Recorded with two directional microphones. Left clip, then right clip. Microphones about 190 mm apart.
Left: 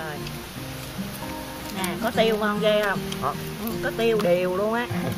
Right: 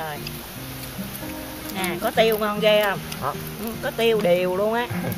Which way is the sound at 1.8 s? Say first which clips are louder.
Right 3 dB; 25° right (ahead or behind).